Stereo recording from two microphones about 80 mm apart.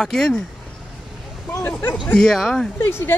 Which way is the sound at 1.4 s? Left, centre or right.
Left.